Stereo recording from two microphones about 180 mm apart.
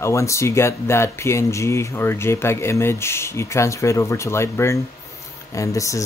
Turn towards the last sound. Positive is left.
turn(degrees=15)  # may be behind; listen again after turning